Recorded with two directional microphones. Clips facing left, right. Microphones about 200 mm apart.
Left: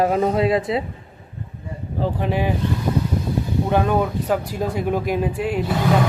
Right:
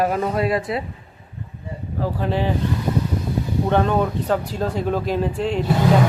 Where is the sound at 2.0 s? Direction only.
15° left (ahead or behind).